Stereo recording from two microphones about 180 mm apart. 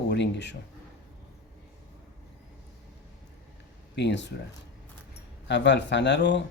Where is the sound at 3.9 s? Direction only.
75° left (ahead or behind).